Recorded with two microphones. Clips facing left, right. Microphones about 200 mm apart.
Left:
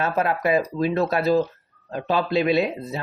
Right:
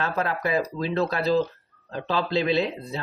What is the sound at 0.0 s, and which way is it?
Speech, 20° left (ahead or behind).